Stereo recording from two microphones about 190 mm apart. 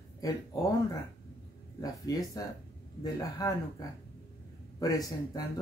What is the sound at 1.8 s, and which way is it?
Speech, 20° left (ahead or behind).